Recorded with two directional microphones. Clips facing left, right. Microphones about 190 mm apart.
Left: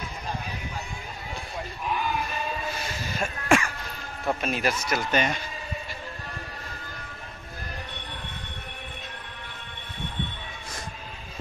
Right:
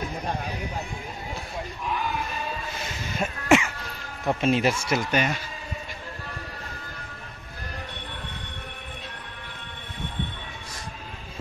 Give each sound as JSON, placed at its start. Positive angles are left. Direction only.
{"t": 3.2, "sound": "throat clearing", "side_deg": -20}
{"t": 4.3, "sound": "speech", "side_deg": -25}
{"t": 5.1, "sound": "speech", "side_deg": -5}